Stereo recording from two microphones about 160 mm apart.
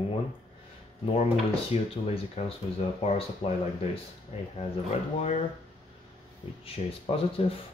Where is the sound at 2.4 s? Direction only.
40° left (ahead or behind).